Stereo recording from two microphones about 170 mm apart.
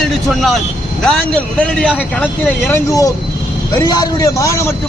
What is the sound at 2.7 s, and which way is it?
A man's voice, 20° left (ahead or behind).